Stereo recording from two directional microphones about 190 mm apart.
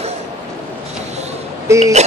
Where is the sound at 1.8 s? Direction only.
35° right (ahead or behind).